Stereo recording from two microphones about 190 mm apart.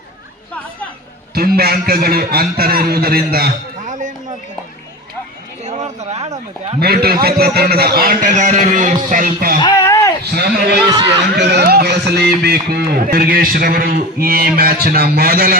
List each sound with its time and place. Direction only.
1.3 s a man's voice: 55° right (ahead or behind)
5.6 s a sound: 35° right (ahead or behind)
6.7 s speech: 55° right (ahead or behind)
9.6 s a sound: 20° left (ahead or behind)
10.3 s a man's voice: 55° right (ahead or behind)
10.8 s speech: 25° right (ahead or behind)
11.3 s speech: 60° right (ahead or behind)